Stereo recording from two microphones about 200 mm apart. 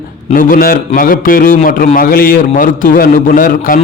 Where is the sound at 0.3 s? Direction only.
45° left (ahead or behind).